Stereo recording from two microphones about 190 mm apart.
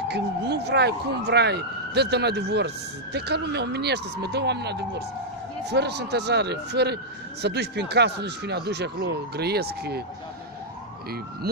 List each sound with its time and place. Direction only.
0.1 s speech: 60° right (ahead or behind)
11.4 s speech: 55° right (ahead or behind)